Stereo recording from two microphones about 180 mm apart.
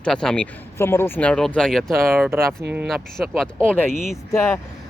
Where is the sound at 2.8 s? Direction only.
Centre (ahead or behind).